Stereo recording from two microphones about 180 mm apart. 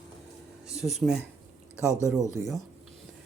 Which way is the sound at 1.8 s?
15° left (ahead or behind).